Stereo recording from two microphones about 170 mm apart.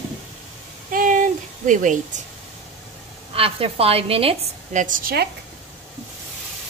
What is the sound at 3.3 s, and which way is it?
A woman's voice, 35° right (ahead or behind).